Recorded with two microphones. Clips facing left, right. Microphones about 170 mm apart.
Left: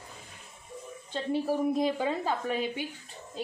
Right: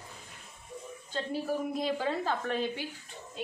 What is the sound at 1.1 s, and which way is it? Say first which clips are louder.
A woman's voice: left 4 dB; 25° left (ahead or behind).